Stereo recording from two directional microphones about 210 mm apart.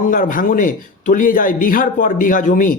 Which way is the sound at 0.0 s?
40° left (ahead or behind).